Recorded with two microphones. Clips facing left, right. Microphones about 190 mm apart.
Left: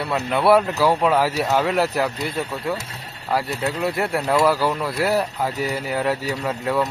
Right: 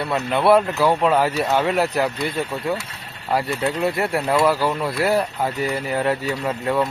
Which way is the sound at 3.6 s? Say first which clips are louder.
Right 2 dB; 5° left (ahead or behind).